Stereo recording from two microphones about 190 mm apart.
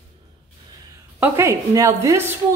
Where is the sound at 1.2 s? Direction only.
15° right (ahead or behind).